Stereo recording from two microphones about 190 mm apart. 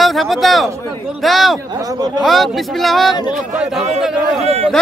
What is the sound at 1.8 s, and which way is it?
Speech, 20° right (ahead or behind).